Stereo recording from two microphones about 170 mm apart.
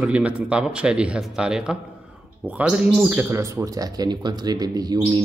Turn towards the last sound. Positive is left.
turn(degrees=-25)  # may be behind; listen again after turning